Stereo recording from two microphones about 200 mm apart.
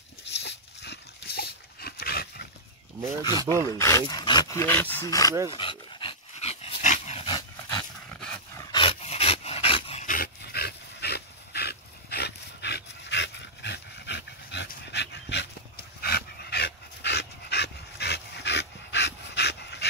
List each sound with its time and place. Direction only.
0.3 s dog: 60° left (ahead or behind)
3.3 s speech: 20° left (ahead or behind)
4.6 s speech: 10° left (ahead or behind)
5.5 s dog: 25° left (ahead or behind)
10.0 s dog: 45° left (ahead or behind)